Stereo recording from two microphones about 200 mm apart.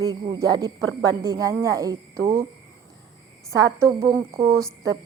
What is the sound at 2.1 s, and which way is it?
Speech, 45° right (ahead or behind).